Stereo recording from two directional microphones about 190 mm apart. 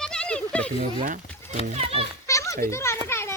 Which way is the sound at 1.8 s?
30° right (ahead or behind).